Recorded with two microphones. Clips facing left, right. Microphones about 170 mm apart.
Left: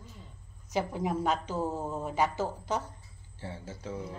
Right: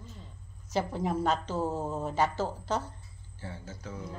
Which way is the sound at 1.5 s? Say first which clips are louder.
Right 1 dB; centre (ahead or behind).